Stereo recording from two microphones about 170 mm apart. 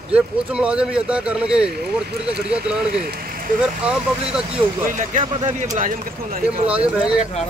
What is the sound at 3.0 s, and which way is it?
Speech, 60° right (ahead or behind).